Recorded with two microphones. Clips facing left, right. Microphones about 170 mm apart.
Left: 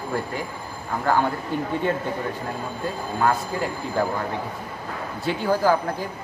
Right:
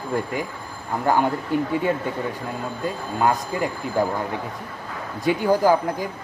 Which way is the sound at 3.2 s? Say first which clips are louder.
Right 1 dB; 15° right (ahead or behind).